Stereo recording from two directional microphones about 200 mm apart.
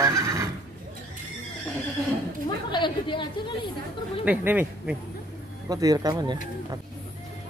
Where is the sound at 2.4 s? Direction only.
25° left (ahead or behind).